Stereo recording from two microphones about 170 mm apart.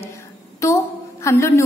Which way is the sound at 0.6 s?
15° left (ahead or behind).